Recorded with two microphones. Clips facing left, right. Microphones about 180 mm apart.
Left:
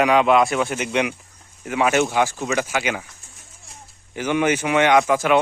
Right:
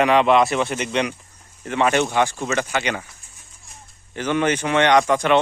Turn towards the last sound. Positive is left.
turn(degrees=5)  # may be behind; listen again after turning